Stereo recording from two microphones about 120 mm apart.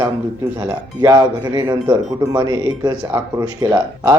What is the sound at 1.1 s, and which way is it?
Speech, 35° right (ahead or behind).